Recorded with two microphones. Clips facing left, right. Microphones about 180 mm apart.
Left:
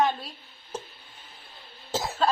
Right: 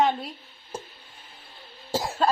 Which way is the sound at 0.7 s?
10° right (ahead or behind).